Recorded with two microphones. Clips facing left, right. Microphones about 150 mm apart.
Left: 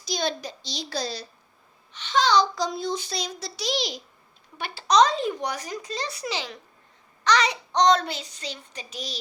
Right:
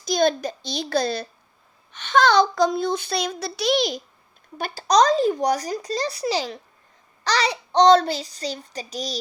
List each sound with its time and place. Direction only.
0.0 s a woman's voice: 50° right (ahead or behind)
4.5 s speech: 40° right (ahead or behind)